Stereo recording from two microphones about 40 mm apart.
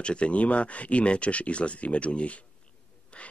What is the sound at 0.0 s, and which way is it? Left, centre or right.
Speech, left.